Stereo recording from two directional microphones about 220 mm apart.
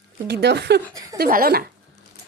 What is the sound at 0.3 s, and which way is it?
Speech, 50° right (ahead or behind).